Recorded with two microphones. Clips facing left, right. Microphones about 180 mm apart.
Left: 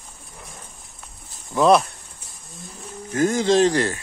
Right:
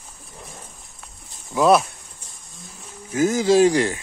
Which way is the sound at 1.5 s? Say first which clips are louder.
Even; 5° right (ahead or behind).